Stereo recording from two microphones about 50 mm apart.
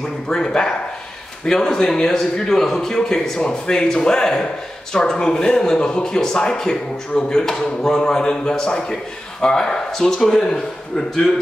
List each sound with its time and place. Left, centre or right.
0.3 s speech: centre